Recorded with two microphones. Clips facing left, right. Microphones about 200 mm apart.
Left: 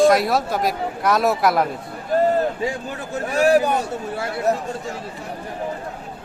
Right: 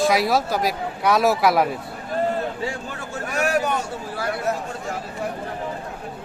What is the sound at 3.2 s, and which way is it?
A man's voice, 30° left (ahead or behind).